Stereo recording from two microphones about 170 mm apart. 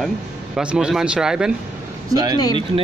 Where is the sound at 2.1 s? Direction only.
25° right (ahead or behind).